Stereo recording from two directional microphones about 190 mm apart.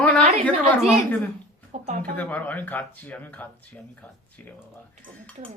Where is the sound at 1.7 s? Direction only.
40° right (ahead or behind).